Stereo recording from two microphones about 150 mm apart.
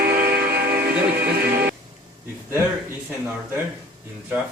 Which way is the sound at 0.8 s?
90° right.